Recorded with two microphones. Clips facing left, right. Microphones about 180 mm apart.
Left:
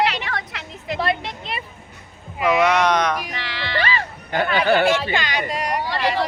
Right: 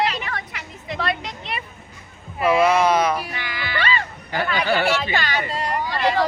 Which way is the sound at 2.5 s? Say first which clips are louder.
Right 1 dB; 5° right (ahead or behind).